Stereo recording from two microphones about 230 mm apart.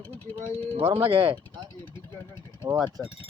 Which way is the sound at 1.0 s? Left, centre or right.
Right.